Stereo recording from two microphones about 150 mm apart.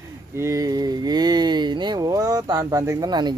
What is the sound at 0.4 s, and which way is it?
Speech, 20° right (ahead or behind).